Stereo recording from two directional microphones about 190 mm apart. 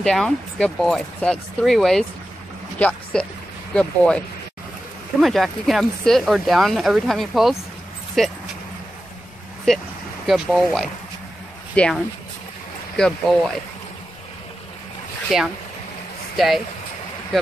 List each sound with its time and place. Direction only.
0.0 s speech: 5° left (ahead or behind)
5.2 s speech: centre (ahead or behind)
9.7 s speech: centre (ahead or behind)
15.3 s speech: centre (ahead or behind)